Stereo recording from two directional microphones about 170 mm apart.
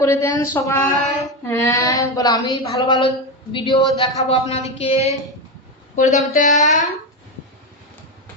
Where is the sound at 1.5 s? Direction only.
20° left (ahead or behind); by 5.1 s 35° left (ahead or behind).